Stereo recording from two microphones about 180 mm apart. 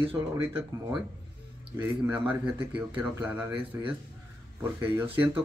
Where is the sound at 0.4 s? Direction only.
15° right (ahead or behind).